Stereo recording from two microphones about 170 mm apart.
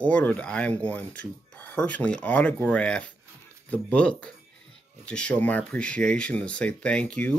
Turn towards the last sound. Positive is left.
turn(degrees=5)  # may be behind; listen again after turning